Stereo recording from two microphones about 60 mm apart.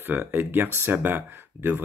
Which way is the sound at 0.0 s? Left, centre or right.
Right.